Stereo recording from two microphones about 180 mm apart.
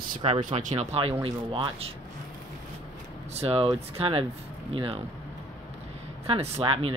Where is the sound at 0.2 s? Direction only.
35° right (ahead or behind).